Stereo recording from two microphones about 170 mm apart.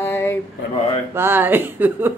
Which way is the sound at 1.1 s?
10° right (ahead or behind).